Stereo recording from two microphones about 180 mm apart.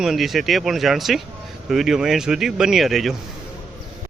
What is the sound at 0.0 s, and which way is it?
Speech, centre (ahead or behind).